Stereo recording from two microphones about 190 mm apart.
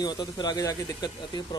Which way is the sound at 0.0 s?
20° left (ahead or behind).